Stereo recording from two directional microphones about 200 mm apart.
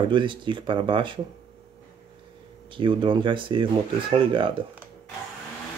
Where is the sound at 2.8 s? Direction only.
25° right (ahead or behind).